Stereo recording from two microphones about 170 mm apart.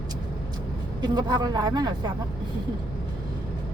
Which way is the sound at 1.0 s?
25° right (ahead or behind).